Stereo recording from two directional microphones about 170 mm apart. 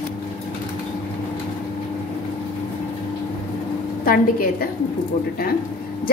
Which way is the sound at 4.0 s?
60° left (ahead or behind).